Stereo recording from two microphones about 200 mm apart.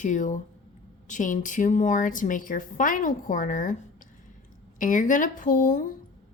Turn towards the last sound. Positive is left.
turn(degrees=40)  # may be behind; listen again after turning